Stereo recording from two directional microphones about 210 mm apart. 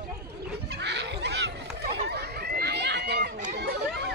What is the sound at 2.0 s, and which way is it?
Chatter, 50° right (ahead or behind).